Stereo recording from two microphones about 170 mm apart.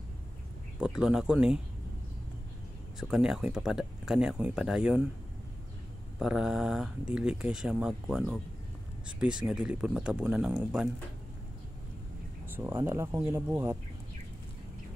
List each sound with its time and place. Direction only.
0.7 s speech: 5° right (ahead or behind)
3.0 s speech: 5° right (ahead or behind)
6.1 s speech: 5° right (ahead or behind)
12.5 s speech: 15° right (ahead or behind)